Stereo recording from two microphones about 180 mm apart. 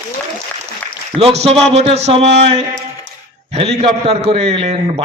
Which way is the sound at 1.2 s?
35° right (ahead or behind).